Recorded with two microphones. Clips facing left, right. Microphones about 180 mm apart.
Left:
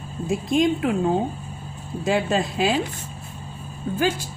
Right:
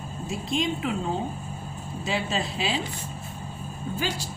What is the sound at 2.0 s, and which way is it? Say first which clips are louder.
Speech: left 7 dB; 55° left (ahead or behind).